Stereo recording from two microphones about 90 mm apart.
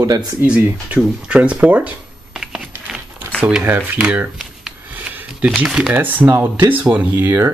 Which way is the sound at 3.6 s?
20° right (ahead or behind).